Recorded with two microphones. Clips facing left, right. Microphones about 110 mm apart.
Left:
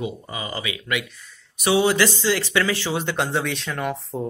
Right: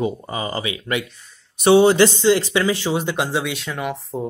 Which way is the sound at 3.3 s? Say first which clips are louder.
Right 1 dB; centre (ahead or behind).